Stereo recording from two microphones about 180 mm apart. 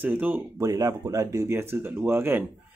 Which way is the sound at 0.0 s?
10° right (ahead or behind).